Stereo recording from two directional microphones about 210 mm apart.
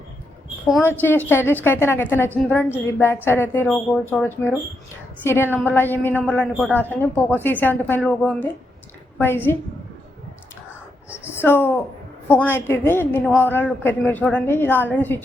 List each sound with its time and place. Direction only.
0.7 s a woman's voice: 10° left (ahead or behind)
11.3 s a woman's voice: 10° left (ahead or behind)